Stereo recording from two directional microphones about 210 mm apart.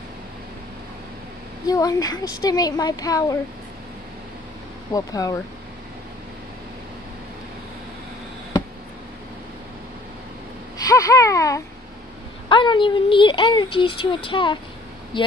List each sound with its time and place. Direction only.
1.7 s a woman's voice: 15° left (ahead or behind)
4.9 s a woman's voice: 15° left (ahead or behind)
10.9 s a sound: 15° left (ahead or behind)
12.4 s speech: 25° left (ahead or behind)